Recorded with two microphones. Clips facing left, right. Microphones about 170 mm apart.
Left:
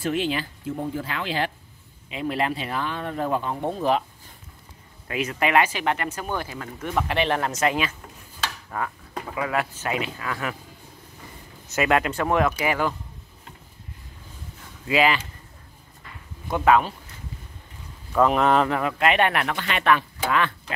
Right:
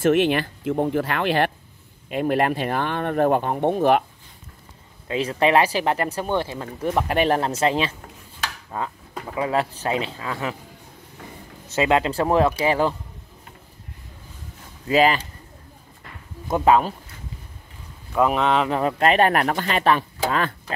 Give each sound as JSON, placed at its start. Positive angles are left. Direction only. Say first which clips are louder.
{"t": 0.0, "sound": "speech", "louder": "right 7 dB", "side_deg": -70}
{"t": 5.0, "sound": "speech", "louder": "right 5 dB", "side_deg": -30}
{"t": 11.7, "sound": "speech", "louder": "right 2 dB", "side_deg": -25}
{"t": 14.9, "sound": "speech", "louder": "right 3 dB", "side_deg": -40}
{"t": 16.5, "sound": "speech", "louder": "right 2 dB", "side_deg": -30}
{"t": 18.1, "sound": "speech", "louder": "even", "side_deg": -10}
{"t": 18.4, "sound": "speech", "louder": "left 1 dB", "side_deg": 0}
{"t": 18.7, "sound": "speech", "louder": "right 3 dB", "side_deg": -30}